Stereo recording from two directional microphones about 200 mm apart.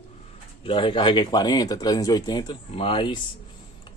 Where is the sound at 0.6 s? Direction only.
25° left (ahead or behind).